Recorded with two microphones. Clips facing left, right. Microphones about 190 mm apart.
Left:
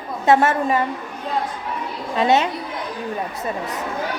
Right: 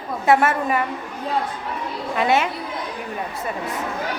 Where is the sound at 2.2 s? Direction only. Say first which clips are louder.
Left 2 dB; 25° left (ahead or behind).